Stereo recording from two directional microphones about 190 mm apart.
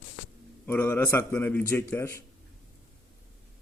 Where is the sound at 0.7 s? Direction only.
10° left (ahead or behind).